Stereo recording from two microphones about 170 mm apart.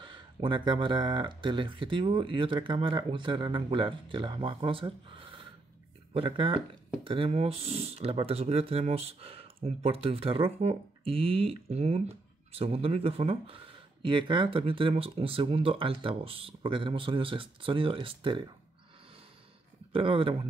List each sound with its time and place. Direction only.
0.0 s speech: 30° right (ahead or behind)
19.9 s speech: 30° right (ahead or behind)